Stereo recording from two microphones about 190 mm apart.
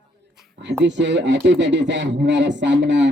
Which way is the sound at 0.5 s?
70° right (ahead or behind).